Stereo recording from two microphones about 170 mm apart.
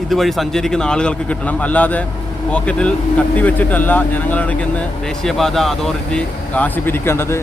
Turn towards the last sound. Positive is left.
turn(degrees=15)  # may be behind; listen again after turning